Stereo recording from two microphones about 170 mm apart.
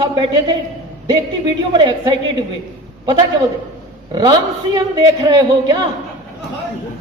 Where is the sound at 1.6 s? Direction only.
25° right (ahead or behind).